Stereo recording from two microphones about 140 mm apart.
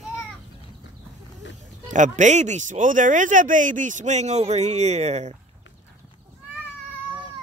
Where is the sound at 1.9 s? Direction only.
60° right (ahead or behind).